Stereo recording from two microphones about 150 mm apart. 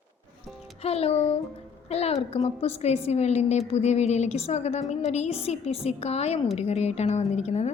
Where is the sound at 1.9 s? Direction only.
45° left (ahead or behind).